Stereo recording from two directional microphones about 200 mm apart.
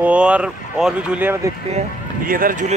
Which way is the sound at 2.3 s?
45° right (ahead or behind).